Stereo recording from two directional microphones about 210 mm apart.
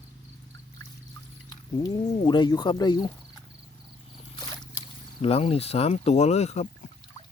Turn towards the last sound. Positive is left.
turn(degrees=30)  # may be behind; listen again after turning